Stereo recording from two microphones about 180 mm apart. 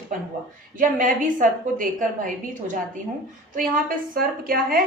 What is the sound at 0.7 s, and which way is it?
A woman's voice, 50° right (ahead or behind).